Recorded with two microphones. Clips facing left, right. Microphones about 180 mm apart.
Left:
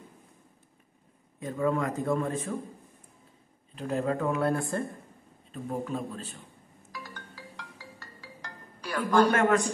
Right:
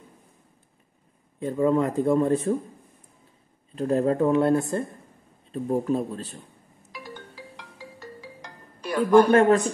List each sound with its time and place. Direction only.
1.4 s a man's voice: 30° right (ahead or behind)
3.7 s speech: 40° right (ahead or behind); by 4.8 s 20° right (ahead or behind)
5.5 s a man's voice: 40° right (ahead or behind)
6.9 s music: 20° right (ahead or behind)
9.3 s a man's voice: 35° right (ahead or behind)